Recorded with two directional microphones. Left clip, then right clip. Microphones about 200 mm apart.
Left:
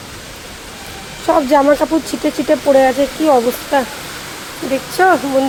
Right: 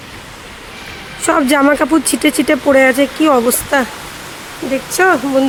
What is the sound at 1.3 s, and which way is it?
Speech, 40° right (ahead or behind).